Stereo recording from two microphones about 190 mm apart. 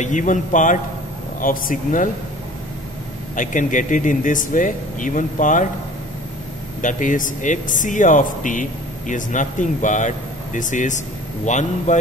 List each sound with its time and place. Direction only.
0.0 s a man's voice: 40° left (ahead or behind)
3.3 s speech: 40° left (ahead or behind)
6.8 s a man's voice: 40° left (ahead or behind)